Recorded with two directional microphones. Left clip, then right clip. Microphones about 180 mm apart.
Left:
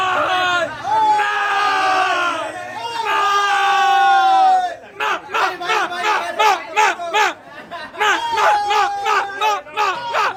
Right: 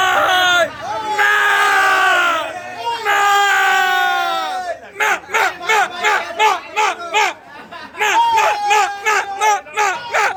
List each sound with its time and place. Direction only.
0.0 s hubbub: 15° right (ahead or behind)
1.2 s a sound: 15° right (ahead or behind)
3.1 s crowd: 15° right (ahead or behind)
4.9 s battle cry: 10° right (ahead or behind)
6.3 s crowd: 30° left (ahead or behind)
7.9 s a sound: 25° left (ahead or behind)